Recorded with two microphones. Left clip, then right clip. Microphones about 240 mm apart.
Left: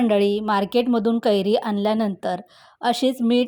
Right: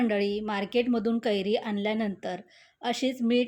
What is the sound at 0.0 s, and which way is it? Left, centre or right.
A woman's voice, left.